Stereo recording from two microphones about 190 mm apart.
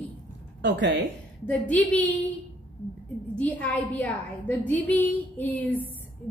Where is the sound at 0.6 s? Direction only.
65° right (ahead or behind).